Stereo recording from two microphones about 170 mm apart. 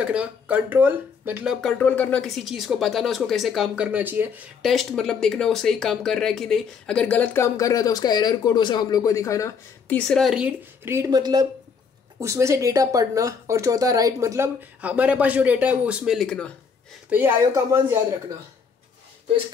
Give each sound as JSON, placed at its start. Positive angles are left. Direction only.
{"t": 0.0, "sound": "speech", "side_deg": -5}
{"t": 4.6, "sound": "speech", "side_deg": 0}
{"t": 9.9, "sound": "speech", "side_deg": 5}
{"t": 10.9, "sound": "speech", "side_deg": -20}
{"t": 17.1, "sound": "speech", "side_deg": -10}